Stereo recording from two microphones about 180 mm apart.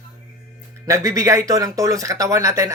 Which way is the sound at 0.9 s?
15° right (ahead or behind).